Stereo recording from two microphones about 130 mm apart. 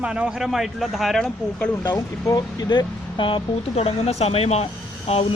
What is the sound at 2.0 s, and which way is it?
Speech, 30° left (ahead or behind).